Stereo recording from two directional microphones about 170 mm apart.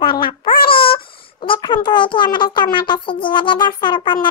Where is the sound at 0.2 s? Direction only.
30° left (ahead or behind).